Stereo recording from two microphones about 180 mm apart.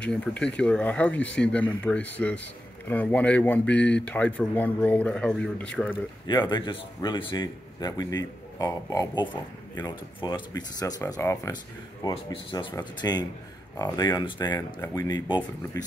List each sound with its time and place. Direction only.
0.0 s speech: 5° left (ahead or behind)
6.2 s a man's voice: 25° left (ahead or behind)